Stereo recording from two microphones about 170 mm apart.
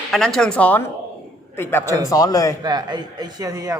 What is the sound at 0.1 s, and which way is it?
A man's voice, centre (ahead or behind).